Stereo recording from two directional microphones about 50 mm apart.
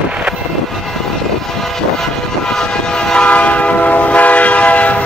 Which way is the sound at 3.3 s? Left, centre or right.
Left.